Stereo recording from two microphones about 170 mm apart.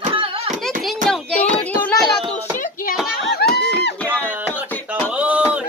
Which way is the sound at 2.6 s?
55° left (ahead or behind).